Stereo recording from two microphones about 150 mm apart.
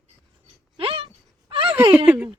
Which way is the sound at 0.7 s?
40° right (ahead or behind).